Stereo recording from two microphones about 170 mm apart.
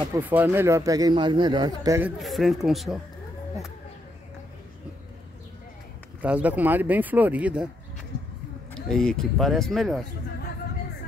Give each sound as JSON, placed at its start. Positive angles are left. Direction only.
{"t": 0.2, "sound": "speech", "side_deg": -10}
{"t": 2.0, "sound": "speech", "side_deg": -5}
{"t": 6.2, "sound": "speech", "side_deg": -10}
{"t": 8.7, "sound": "speech", "side_deg": 5}